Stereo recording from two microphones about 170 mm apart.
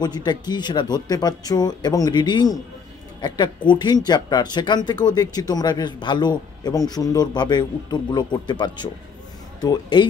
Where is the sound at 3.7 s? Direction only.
25° left (ahead or behind).